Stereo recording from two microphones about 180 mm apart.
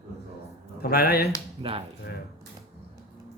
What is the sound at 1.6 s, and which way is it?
Speech, 30° right (ahead or behind).